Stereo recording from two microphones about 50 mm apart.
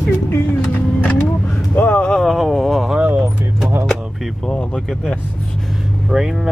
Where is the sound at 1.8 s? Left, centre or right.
Left.